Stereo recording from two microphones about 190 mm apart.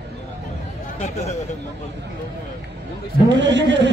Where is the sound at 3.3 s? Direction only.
70° right (ahead or behind).